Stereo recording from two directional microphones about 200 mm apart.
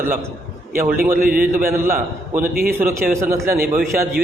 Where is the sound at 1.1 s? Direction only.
45° right (ahead or behind).